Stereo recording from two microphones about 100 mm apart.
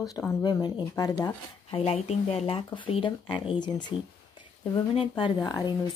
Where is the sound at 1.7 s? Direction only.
90° left.